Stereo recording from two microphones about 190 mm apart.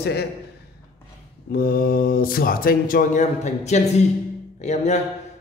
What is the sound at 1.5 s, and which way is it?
A man's voice, 55° left (ahead or behind).